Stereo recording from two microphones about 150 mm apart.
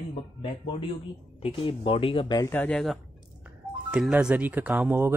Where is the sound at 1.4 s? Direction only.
35° left (ahead or behind).